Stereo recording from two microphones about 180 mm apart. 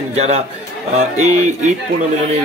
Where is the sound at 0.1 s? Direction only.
35° right (ahead or behind).